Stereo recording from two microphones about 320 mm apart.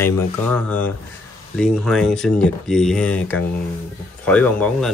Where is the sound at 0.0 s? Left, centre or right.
Centre.